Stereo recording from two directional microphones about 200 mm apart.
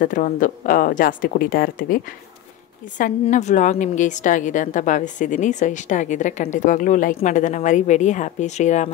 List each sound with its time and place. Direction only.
0.0 s a woman's voice: 40° left (ahead or behind)
3.0 s a woman's voice: 40° left (ahead or behind)